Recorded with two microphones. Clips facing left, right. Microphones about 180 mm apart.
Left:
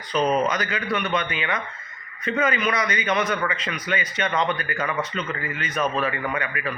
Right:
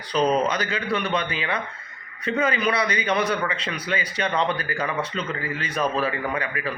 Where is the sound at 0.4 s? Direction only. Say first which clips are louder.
Even; 30° right (ahead or behind).